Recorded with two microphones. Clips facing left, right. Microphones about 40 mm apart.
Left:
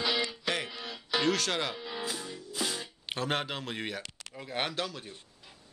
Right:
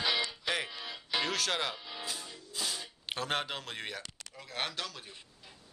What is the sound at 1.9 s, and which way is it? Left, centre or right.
Music, left.